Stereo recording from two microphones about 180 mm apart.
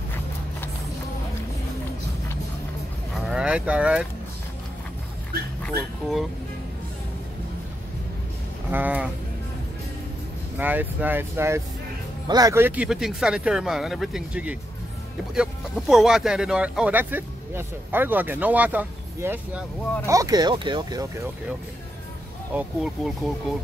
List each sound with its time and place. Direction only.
3.2 s a sound: centre (ahead or behind)
5.6 s speech: centre (ahead or behind)
8.7 s speech: 10° right (ahead or behind)
10.6 s speech: 10° right (ahead or behind)
22.5 s speech: 5° right (ahead or behind)